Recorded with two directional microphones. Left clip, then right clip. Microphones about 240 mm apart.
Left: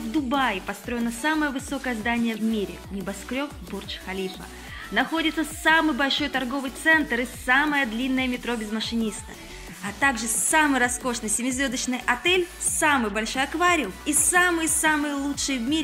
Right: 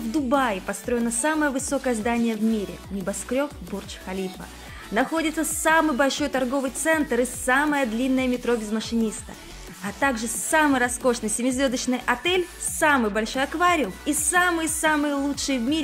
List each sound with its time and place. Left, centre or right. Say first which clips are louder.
0.3 s speech: right 2 dB; right
9.8 s speech: left 1 dB; right